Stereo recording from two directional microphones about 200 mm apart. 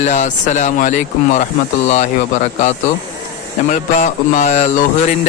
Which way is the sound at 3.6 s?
40° left (ahead or behind).